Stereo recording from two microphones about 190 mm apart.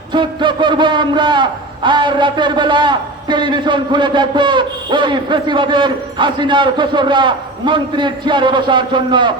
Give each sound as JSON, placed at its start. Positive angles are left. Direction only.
{"t": 0.1, "sound": "a man's voice", "side_deg": -25}